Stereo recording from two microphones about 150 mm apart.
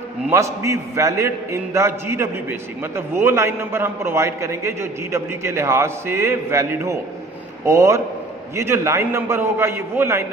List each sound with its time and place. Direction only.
0.3 s a man's voice: 20° right (ahead or behind)